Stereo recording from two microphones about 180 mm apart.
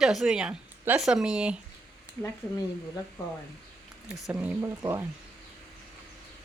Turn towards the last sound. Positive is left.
turn(degrees=-15)  # may be behind; listen again after turning